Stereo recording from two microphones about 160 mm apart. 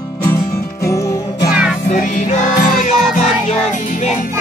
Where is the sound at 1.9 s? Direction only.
55° left (ahead or behind).